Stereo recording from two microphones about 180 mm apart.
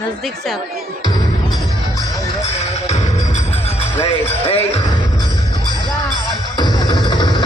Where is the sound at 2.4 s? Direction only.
40° left (ahead or behind).